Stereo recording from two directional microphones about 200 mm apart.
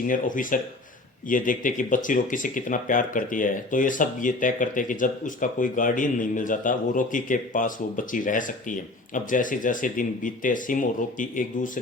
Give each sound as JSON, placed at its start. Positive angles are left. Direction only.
{"t": 0.1, "sound": "speech", "side_deg": 40}